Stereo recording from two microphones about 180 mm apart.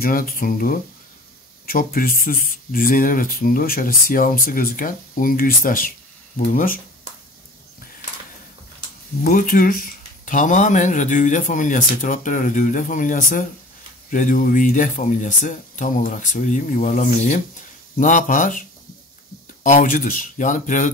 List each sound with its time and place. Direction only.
0.0 s speech: 50° left (ahead or behind)
9.2 s speech: 55° left (ahead or behind)